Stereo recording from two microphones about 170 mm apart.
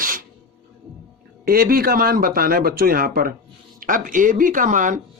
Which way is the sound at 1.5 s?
60° right (ahead or behind).